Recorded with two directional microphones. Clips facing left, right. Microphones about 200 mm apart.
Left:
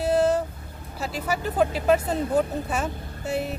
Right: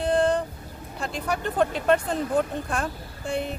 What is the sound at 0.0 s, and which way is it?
Vehicle, 5° left (ahead or behind).